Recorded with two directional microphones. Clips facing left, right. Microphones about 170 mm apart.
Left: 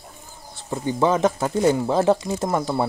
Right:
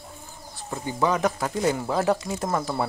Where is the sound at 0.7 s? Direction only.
25° left (ahead or behind).